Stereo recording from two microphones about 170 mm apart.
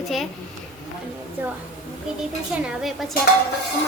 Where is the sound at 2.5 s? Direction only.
5° right (ahead or behind).